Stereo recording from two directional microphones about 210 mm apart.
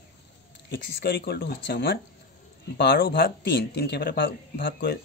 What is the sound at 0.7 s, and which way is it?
Speech, 50° left (ahead or behind).